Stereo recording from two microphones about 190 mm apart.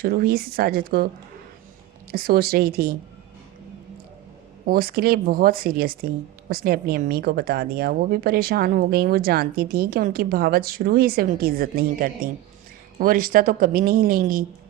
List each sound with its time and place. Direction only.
0.0 s speech: 50° right (ahead or behind)
4.6 s speech: 50° right (ahead or behind)